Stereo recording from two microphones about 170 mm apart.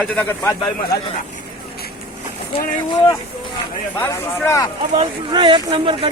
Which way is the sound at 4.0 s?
15° left (ahead or behind).